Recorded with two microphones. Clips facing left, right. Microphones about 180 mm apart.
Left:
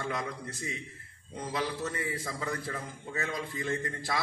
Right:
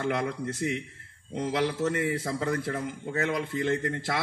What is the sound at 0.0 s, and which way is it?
A man's voice, 65° right (ahead or behind).